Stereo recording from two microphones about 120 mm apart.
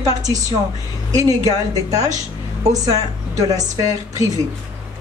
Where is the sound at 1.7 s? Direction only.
30° right (ahead or behind).